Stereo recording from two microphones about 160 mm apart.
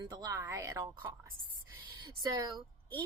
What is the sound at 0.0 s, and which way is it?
A woman's voice, 20° right (ahead or behind).